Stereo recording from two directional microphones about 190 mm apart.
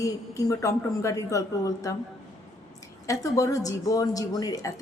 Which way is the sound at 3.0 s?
15° left (ahead or behind).